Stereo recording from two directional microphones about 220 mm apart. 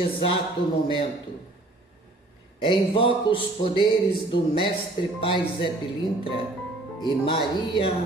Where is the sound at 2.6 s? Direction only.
25° left (ahead or behind).